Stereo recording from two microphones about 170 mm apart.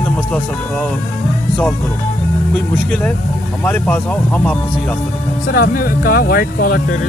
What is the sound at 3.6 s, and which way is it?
Speech, 10° left (ahead or behind).